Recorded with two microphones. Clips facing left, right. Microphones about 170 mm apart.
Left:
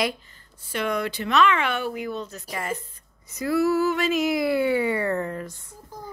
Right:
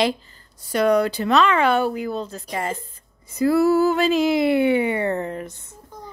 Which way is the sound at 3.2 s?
30° right (ahead or behind).